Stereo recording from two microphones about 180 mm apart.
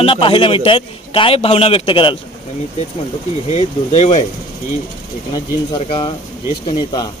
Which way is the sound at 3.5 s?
35° left (ahead or behind).